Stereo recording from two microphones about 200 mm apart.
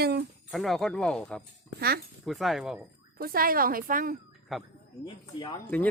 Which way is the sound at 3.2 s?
45° right (ahead or behind).